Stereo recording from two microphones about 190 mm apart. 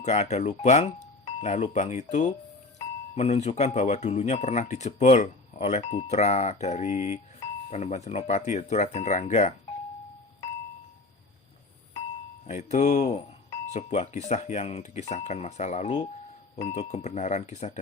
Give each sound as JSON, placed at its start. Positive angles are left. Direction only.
{"t": 0.0, "sound": "speech", "side_deg": 35}
{"t": 12.5, "sound": "speech", "side_deg": 40}